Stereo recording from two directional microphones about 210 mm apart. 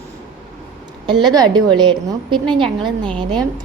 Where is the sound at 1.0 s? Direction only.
20° right (ahead or behind).